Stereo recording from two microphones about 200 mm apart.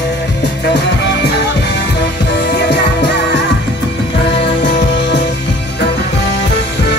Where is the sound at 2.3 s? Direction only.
60° left (ahead or behind).